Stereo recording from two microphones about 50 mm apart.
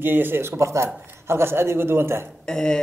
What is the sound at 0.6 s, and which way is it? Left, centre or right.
A man's voice, right.